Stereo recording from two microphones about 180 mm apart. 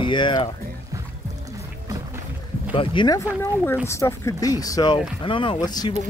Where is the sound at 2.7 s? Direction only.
25° left (ahead or behind).